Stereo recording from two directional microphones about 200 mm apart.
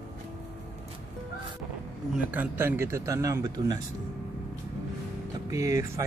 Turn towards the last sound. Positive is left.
turn(degrees=-15)  # may be behind; listen again after turning